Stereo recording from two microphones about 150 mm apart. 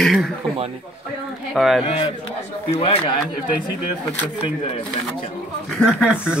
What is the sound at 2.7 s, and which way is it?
Speech, 40° left (ahead or behind).